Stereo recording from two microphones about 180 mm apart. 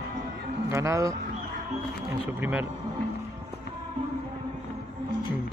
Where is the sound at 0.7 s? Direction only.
15° right (ahead or behind).